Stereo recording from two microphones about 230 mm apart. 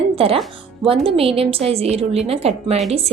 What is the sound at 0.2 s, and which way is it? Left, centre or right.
A woman's voice, right.